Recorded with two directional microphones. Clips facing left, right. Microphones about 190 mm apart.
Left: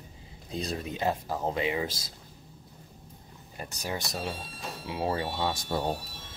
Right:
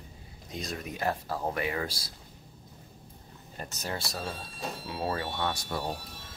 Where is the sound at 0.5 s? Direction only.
30° left (ahead or behind).